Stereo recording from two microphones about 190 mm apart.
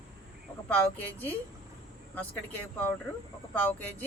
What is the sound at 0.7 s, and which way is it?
Speech, 10° left (ahead or behind).